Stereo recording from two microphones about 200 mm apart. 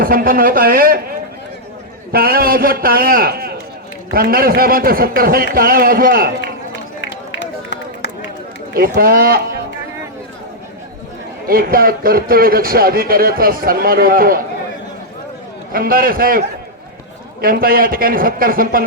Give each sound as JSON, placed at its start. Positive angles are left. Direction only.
{"t": 0.0, "sound": "a man's voice", "side_deg": -45}
{"t": 2.1, "sound": "a man's voice", "side_deg": -50}
{"t": 7.0, "sound": "run", "side_deg": 65}
{"t": 8.7, "sound": "a man's voice", "side_deg": -45}
{"t": 11.4, "sound": "a man's voice", "side_deg": -45}
{"t": 15.7, "sound": "a man's voice", "side_deg": -45}
{"t": 17.4, "sound": "a man's voice", "side_deg": -45}